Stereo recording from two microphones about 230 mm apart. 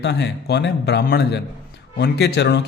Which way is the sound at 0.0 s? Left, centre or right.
Left.